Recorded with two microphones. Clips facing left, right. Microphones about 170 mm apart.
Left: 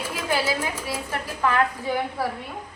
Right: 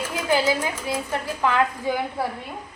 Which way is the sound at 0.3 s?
15° right (ahead or behind).